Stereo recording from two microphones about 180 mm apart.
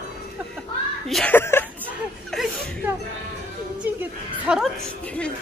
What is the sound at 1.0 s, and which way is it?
Speech, 5° left (ahead or behind).